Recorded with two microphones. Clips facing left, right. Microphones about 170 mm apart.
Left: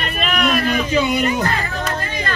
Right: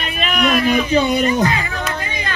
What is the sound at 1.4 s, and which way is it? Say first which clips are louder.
Speech: right 3 dB; centre (ahead or behind).